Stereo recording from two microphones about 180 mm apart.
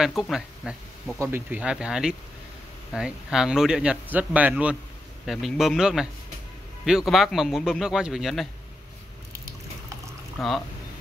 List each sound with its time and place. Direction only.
0.0 s a man's voice: centre (ahead or behind)
10.4 s a man's voice: centre (ahead or behind)